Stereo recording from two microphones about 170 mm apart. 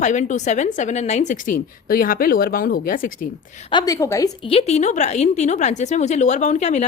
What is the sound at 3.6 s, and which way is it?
Speech, 25° left (ahead or behind).